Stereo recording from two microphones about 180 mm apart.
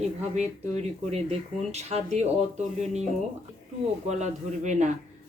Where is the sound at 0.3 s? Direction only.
35° right (ahead or behind).